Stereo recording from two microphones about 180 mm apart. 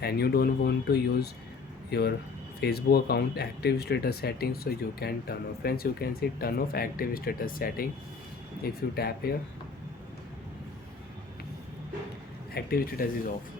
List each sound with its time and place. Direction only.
0.0 s speech: 60° left (ahead or behind)
12.5 s speech: 55° left (ahead or behind)